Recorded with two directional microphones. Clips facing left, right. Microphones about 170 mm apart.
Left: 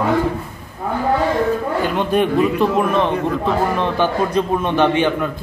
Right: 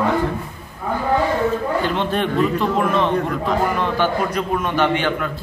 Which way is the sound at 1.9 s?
10° left (ahead or behind).